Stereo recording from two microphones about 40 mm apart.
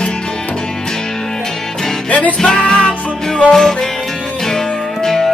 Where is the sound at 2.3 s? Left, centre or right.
Centre.